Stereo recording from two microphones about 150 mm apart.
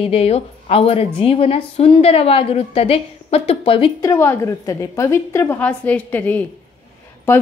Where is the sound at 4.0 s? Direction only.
20° left (ahead or behind).